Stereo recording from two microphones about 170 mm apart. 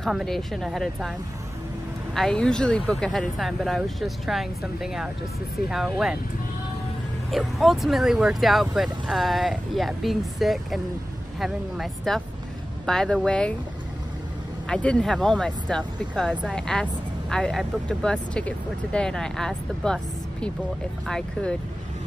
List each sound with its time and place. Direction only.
0.0 s speech: centre (ahead or behind)
2.1 s speech: 5° left (ahead or behind)
7.2 s speech: centre (ahead or behind)
14.7 s speech: 5° left (ahead or behind)